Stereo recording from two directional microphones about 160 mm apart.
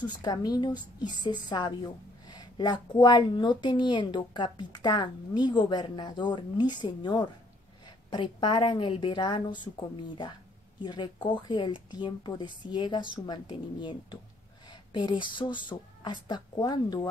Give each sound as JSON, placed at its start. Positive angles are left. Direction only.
{"t": 0.0, "sound": "a woman's voice", "side_deg": 25}
{"t": 14.7, "sound": "a sound", "side_deg": 30}
{"t": 15.3, "sound": "a woman's voice", "side_deg": 30}